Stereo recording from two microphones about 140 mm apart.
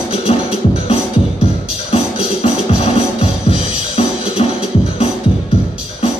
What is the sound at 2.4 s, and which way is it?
Music, 45° left (ahead or behind).